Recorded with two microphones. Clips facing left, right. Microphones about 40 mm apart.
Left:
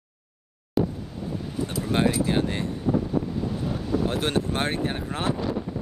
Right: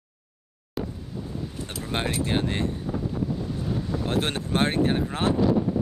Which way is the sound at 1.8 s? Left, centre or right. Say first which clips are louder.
Left 5 dB; centre.